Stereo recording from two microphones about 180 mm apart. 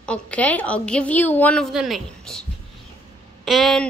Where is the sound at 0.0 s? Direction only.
5° left (ahead or behind).